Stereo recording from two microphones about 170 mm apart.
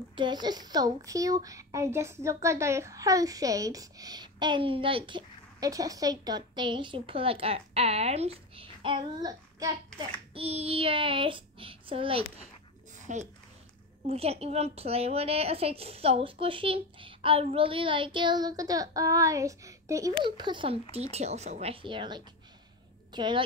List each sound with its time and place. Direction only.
0.1 s a child's voice: 25° right (ahead or behind)
9.9 s a woman's voice: 35° right (ahead or behind)
13.0 s a child's voice: 45° right (ahead or behind); by 23.4 s 25° right (ahead or behind)